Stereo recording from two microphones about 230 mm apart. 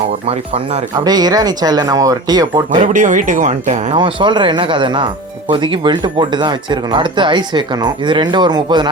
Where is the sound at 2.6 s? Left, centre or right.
Right.